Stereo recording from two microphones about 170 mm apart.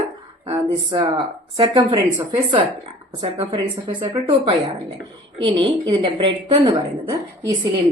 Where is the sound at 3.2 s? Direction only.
30° right (ahead or behind).